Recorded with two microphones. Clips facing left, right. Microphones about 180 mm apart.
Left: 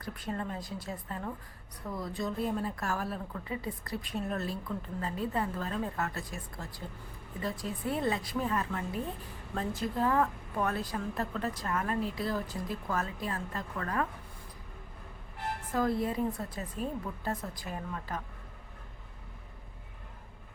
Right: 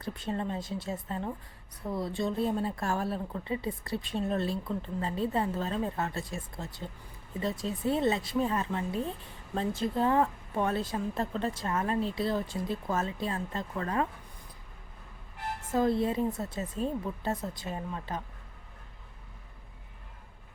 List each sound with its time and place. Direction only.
0.0 s speech: 25° right (ahead or behind)
15.7 s speech: 25° right (ahead or behind)